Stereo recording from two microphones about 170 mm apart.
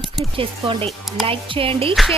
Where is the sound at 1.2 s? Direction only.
35° right (ahead or behind).